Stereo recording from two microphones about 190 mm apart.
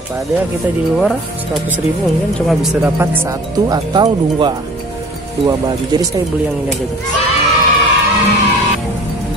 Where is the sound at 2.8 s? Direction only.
10° right (ahead or behind).